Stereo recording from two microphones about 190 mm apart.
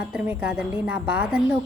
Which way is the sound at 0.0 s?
5° right (ahead or behind).